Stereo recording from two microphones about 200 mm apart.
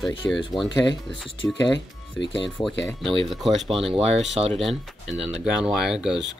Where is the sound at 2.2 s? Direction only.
60° left (ahead or behind).